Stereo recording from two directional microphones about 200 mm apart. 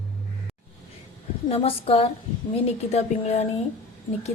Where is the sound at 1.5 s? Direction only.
30° left (ahead or behind).